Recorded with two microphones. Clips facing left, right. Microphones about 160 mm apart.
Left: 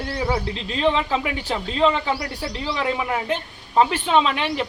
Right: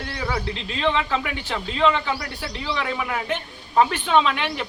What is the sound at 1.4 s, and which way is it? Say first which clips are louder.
Speech: left 1 dB; 35° left (ahead or behind).